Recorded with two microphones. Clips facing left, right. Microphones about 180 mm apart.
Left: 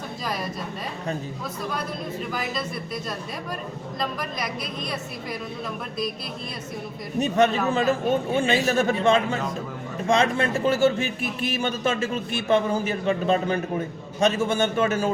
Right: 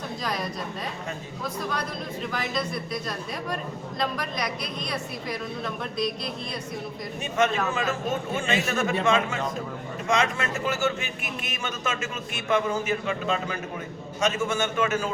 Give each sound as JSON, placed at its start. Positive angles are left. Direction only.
{"t": 4.0, "sound": "a woman's voice", "side_deg": 0}
{"t": 7.2, "sound": "speech", "side_deg": 35}